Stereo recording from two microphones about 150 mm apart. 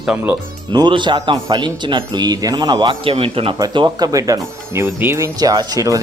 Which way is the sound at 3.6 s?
25° right (ahead or behind).